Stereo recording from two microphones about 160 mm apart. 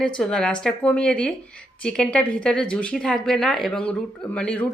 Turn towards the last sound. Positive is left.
turn(degrees=10)  # may be behind; listen again after turning